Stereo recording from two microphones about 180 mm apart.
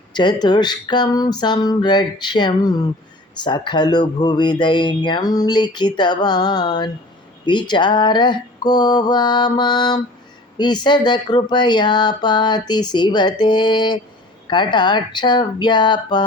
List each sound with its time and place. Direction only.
0.1 s speech: 25° left (ahead or behind)